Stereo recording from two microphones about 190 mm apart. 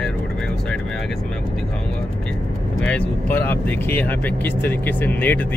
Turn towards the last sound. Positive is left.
turn(degrees=10)  # may be behind; listen again after turning